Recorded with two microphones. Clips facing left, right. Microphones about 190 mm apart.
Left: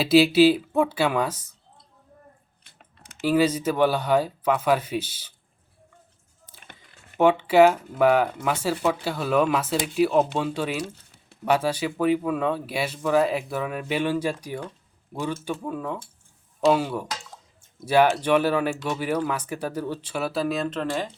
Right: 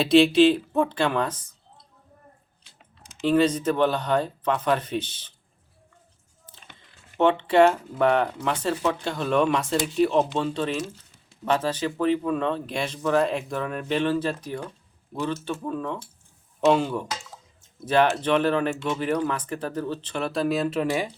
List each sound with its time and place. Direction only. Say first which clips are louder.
0.0 s speech: even; 5° left (ahead or behind)
2.6 s typing: left 1 dB; 60° left (ahead or behind)
3.2 s speech: right 1 dB; 5° left (ahead or behind)
6.7 s speech: left 1 dB; 10° left (ahead or behind); by 21.1 s 10° right (ahead or behind)